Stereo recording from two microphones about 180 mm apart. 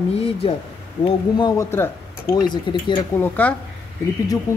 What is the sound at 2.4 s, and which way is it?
Speech, 25° left (ahead or behind).